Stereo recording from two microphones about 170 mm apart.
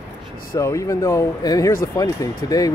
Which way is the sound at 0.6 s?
15° left (ahead or behind).